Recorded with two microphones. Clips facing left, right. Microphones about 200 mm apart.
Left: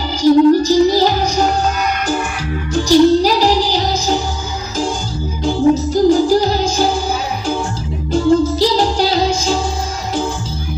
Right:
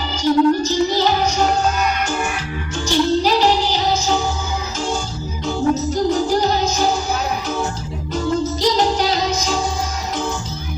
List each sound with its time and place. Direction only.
0.2 s music: 35° left (ahead or behind)
2.7 s music: 35° left (ahead or behind)
5.4 s music: 30° left (ahead or behind)
8.1 s music: 30° left (ahead or behind)